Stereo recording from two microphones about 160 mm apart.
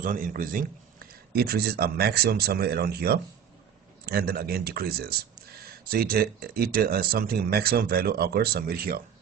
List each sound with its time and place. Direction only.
0.0 s a man's voice: 60° right (ahead or behind)
1.3 s speech: 75° right (ahead or behind)